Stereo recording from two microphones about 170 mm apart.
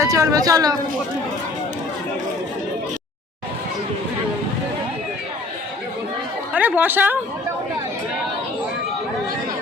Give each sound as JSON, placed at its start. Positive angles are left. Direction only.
{"t": 0.0, "sound": "a woman's voice", "side_deg": -20}
{"t": 6.5, "sound": "a woman's voice", "side_deg": -10}